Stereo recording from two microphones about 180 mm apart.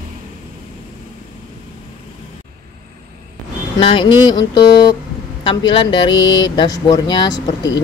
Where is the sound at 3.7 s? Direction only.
25° left (ahead or behind).